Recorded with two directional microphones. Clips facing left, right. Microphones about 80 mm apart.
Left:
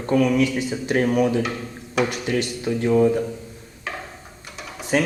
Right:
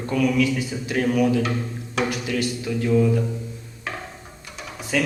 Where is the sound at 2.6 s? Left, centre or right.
Left.